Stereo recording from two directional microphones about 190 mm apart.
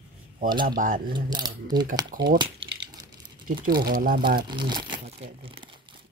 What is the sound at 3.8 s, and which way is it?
Speech, 50° right (ahead or behind).